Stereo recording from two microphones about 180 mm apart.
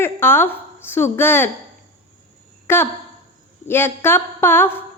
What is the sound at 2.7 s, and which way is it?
A woman's voice, 15° left (ahead or behind).